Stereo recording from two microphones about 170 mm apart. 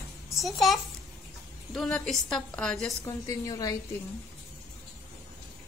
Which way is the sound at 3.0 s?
20° left (ahead or behind).